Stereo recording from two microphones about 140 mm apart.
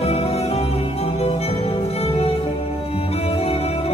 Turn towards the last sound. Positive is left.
turn(degrees=45)  # may be behind; listen again after turning